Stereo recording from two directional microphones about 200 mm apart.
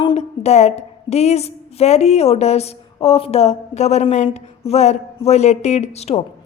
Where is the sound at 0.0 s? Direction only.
30° left (ahead or behind).